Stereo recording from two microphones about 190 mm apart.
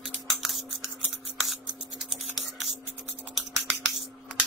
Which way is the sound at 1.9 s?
Centre (ahead or behind).